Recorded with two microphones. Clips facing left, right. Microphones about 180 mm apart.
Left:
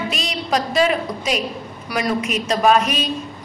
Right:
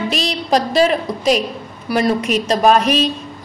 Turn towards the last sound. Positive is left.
turn(degrees=-35)  # may be behind; listen again after turning